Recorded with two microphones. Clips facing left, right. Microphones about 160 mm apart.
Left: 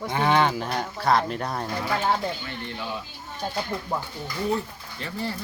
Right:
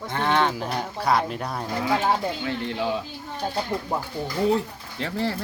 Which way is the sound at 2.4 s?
90° right.